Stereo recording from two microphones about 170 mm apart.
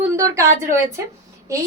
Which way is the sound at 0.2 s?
15° right (ahead or behind).